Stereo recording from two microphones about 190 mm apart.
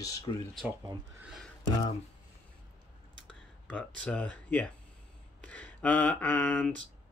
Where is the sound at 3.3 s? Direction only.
5° left (ahead or behind).